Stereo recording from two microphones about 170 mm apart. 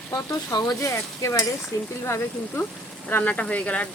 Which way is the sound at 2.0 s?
15° left (ahead or behind).